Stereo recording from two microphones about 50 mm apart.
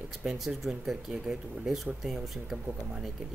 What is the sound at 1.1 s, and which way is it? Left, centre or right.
Speech, centre.